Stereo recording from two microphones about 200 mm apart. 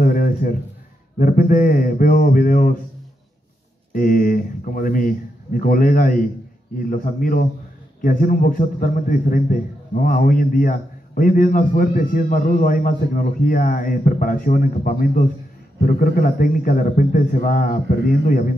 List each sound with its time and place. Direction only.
0.0 s a sound: 45° left (ahead or behind)
1.1 s a man's voice: 45° left (ahead or behind)
3.9 s a man's voice: 45° left (ahead or behind)